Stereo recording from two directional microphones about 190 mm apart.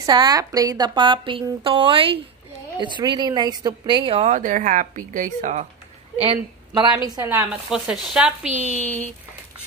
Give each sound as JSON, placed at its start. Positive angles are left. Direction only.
{"t": 0.0, "sound": "a woman's voice", "side_deg": -20}
{"t": 6.1, "sound": "a woman's voice", "side_deg": -30}
{"t": 7.7, "sound": "speech", "side_deg": -5}